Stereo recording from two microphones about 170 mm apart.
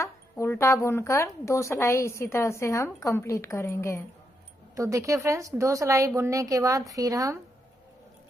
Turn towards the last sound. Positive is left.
turn(degrees=-20)  # may be behind; listen again after turning